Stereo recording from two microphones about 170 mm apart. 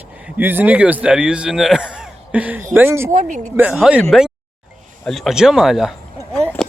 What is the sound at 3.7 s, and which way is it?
Speech, 5° right (ahead or behind).